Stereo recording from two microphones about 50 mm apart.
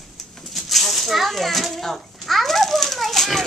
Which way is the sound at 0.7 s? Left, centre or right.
Centre.